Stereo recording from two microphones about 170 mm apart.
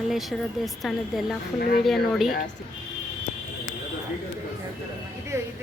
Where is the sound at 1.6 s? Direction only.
60° left (ahead or behind).